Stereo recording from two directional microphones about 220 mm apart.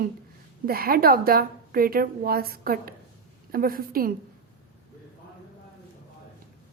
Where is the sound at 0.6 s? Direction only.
40° right (ahead or behind).